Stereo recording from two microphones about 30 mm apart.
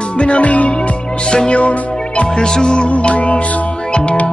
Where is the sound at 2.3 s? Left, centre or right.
Left.